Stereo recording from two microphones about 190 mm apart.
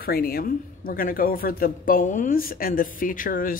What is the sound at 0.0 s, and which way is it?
A man's voice, 55° left (ahead or behind).